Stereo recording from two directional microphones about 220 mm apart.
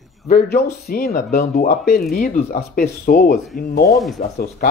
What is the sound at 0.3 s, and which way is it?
Speech, 45° left (ahead or behind).